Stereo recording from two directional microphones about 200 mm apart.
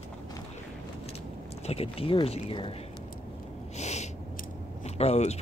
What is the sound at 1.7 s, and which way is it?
Speech, 30° left (ahead or behind).